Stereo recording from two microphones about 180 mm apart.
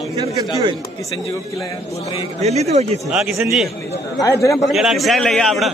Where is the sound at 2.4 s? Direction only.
35° right (ahead or behind).